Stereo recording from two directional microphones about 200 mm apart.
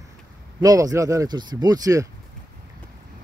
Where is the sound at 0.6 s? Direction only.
15° right (ahead or behind).